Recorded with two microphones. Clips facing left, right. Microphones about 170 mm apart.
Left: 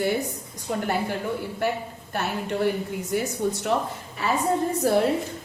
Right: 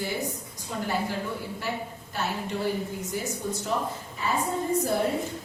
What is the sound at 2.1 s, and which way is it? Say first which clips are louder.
A woman's voice: left 4 dB; 65° left (ahead or behind).